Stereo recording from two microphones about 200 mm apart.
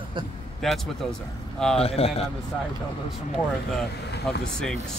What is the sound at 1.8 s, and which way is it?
Speech, 30° left (ahead or behind).